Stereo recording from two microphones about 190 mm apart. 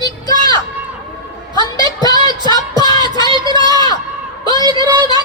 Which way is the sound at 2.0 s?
20° left (ahead or behind).